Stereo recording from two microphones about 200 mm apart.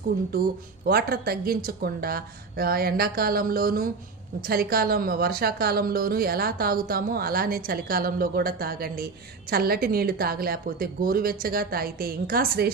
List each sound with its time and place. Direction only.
0.3 s a woman's voice: 50° right (ahead or behind)